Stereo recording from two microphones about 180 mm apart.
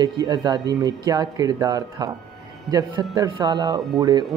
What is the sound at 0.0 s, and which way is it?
Speech, 20° right (ahead or behind).